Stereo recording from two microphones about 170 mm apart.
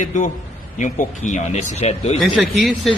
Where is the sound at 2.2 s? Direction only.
Centre (ahead or behind).